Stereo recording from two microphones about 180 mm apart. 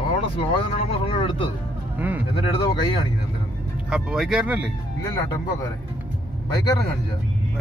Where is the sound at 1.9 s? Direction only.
10° right (ahead or behind).